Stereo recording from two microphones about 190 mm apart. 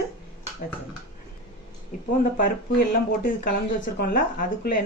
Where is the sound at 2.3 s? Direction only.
50° left (ahead or behind).